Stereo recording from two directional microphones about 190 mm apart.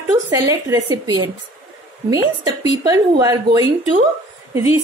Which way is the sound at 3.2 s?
20° right (ahead or behind).